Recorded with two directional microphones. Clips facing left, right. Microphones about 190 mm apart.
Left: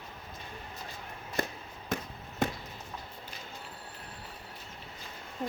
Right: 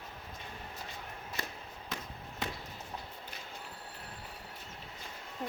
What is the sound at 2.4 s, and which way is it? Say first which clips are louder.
Chop: left 8 dB; 50° left (ahead or behind).